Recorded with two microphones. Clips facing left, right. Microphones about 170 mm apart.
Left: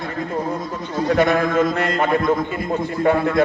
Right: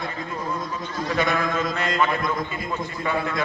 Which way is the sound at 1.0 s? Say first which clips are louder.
Left 7 dB; 60° left (ahead or behind).